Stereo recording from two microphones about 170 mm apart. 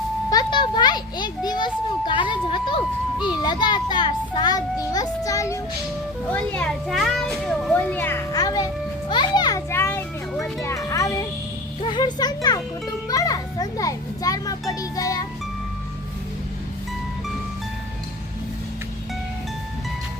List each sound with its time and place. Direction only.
0.3 s a sound: 25° left (ahead or behind)
3.2 s a child's voice: 25° left (ahead or behind)
6.3 s a child's voice: 5° left (ahead or behind)
10.4 s music: 20° left (ahead or behind)
11.8 s speech: 25° left (ahead or behind)
13.1 s children playing: 20° left (ahead or behind)
14.7 s music: 20° left (ahead or behind)